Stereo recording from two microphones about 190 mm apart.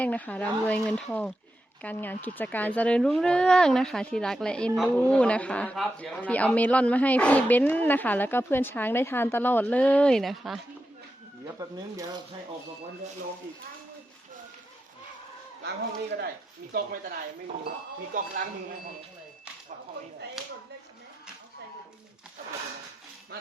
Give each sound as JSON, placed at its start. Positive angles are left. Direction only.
{"t": 0.0, "sound": "speech", "side_deg": 10}
{"t": 11.6, "sound": "speech", "side_deg": -20}
{"t": 15.6, "sound": "speech", "side_deg": -60}